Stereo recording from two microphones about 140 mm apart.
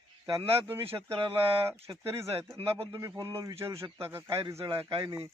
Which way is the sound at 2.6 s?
45° right (ahead or behind).